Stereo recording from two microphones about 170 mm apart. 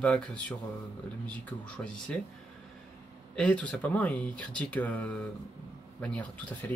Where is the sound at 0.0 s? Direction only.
5° left (ahead or behind).